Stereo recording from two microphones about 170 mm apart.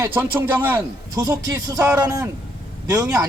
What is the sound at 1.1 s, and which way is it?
Speech, 25° right (ahead or behind).